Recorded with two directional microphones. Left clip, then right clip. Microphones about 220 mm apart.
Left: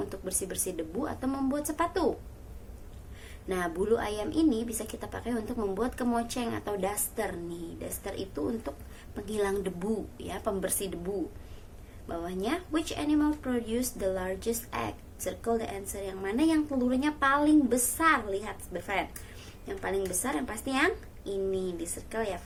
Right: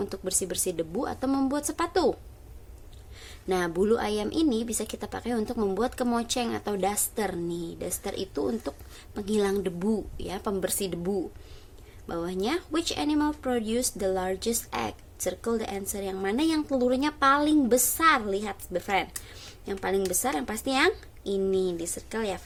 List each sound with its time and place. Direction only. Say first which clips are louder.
0.0 s speech: right 4 dB; 55° right (ahead or behind)
3.5 s a woman's voice: right 3 dB; 55° right (ahead or behind)